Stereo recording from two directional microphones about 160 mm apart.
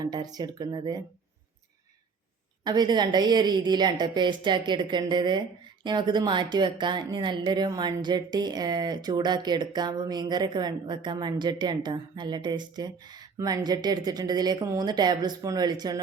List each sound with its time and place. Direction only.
0.0 s a woman's voice: 25° right (ahead or behind)
2.6 s a woman's voice: 25° right (ahead or behind)